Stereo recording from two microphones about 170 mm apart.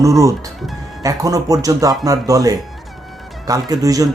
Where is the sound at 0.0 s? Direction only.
20° right (ahead or behind).